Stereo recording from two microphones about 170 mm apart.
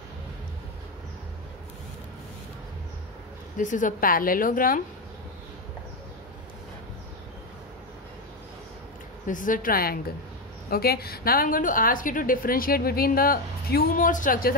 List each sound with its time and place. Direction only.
3.5 s a woman's voice: 50° left (ahead or behind)
9.3 s a woman's voice: 50° left (ahead or behind)